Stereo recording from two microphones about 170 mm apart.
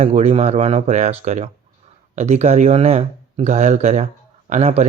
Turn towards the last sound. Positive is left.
turn(degrees=-40)  # may be behind; listen again after turning